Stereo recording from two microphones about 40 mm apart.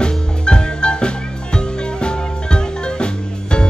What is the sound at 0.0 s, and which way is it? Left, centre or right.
Music, left.